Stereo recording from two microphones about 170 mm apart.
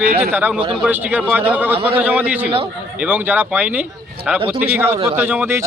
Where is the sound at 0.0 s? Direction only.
60° right (ahead or behind).